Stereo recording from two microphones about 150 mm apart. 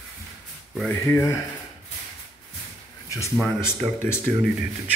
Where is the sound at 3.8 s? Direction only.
35° right (ahead or behind).